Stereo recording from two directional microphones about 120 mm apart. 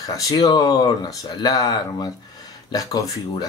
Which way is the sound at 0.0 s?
30° left (ahead or behind).